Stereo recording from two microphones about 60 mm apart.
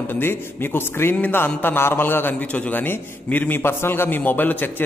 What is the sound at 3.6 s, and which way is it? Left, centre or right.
A man's voice, left.